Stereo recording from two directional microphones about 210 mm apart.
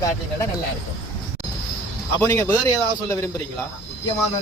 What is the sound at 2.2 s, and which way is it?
A man's voice, 10° left (ahead or behind).